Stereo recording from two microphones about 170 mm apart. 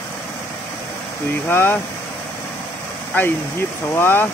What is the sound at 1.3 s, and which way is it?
Speech, 15° left (ahead or behind).